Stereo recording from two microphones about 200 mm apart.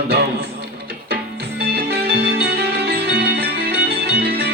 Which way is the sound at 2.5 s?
50° right (ahead or behind).